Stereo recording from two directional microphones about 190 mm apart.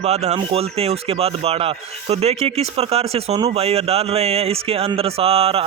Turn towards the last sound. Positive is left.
turn(degrees=-30)  # may be behind; listen again after turning